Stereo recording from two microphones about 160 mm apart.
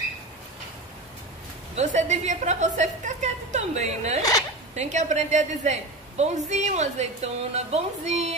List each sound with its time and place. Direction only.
1.8 s a woman's voice: 45° right (ahead or behind)
4.2 s speech: 20° left (ahead or behind)
4.7 s a woman's voice: 50° right (ahead or behind)